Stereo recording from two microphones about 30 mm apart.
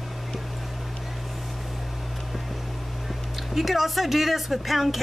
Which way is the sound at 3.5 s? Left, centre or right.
Centre.